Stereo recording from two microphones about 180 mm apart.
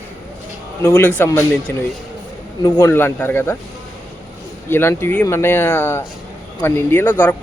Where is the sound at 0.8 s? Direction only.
15° left (ahead or behind).